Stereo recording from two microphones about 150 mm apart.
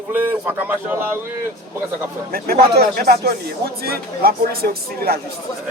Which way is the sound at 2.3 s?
85° right.